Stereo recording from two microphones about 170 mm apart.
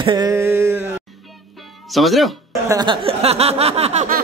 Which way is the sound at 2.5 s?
20° right (ahead or behind).